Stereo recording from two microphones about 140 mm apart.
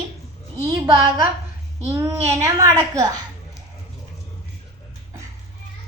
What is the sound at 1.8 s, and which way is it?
A woman's voice, 15° right (ahead or behind).